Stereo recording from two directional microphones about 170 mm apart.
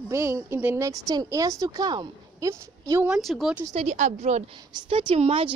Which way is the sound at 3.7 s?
40° right (ahead or behind).